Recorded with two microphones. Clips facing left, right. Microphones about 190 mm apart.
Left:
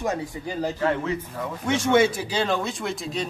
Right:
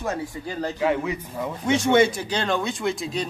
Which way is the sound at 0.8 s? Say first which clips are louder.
Right 3 dB; 10° right (ahead or behind).